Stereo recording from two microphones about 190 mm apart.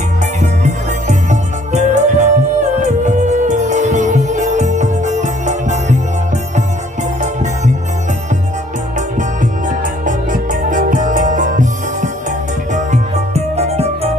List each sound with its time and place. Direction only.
1.0 s music: 35° right (ahead or behind)
9.4 s music: 45° right (ahead or behind)